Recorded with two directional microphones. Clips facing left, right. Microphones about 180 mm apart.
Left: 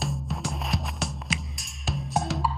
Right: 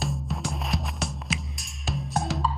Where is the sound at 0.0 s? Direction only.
Centre (ahead or behind).